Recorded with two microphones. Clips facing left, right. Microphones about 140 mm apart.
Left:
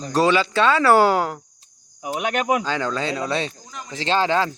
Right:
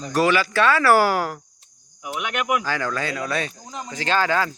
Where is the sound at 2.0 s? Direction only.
35° left (ahead or behind).